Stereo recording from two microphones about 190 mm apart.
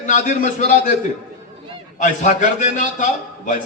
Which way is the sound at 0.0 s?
40° left (ahead or behind).